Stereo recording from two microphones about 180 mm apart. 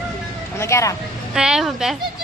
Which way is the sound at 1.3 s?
5° right (ahead or behind).